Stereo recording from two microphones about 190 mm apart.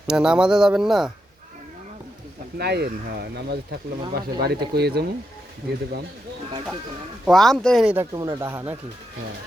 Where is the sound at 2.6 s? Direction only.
60° right (ahead or behind).